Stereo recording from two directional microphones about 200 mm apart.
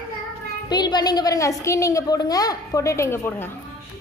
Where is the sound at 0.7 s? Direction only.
20° left (ahead or behind).